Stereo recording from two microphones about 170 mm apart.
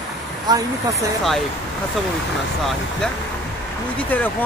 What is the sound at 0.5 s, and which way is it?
Speech, 20° right (ahead or behind).